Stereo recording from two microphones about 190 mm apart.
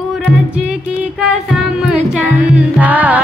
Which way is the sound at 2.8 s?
10° right (ahead or behind).